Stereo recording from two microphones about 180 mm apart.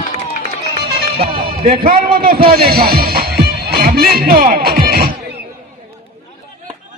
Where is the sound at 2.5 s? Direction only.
55° right (ahead or behind).